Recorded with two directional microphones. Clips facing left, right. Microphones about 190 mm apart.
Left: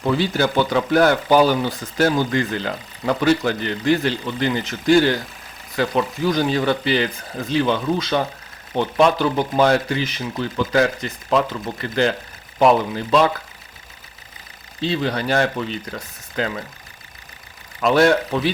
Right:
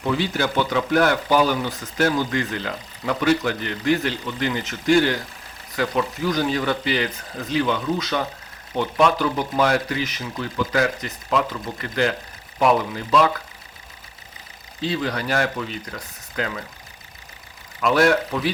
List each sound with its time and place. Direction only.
0.0 s speech: 35° left (ahead or behind)
14.8 s speech: 25° left (ahead or behind)
17.7 s speech: 30° left (ahead or behind)